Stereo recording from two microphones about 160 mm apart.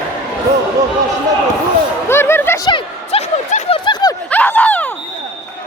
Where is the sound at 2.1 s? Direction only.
15° left (ahead or behind).